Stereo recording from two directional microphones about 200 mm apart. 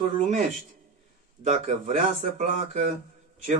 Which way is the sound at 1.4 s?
40° right (ahead or behind).